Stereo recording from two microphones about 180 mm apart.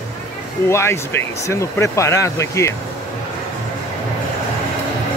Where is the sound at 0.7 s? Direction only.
15° left (ahead or behind).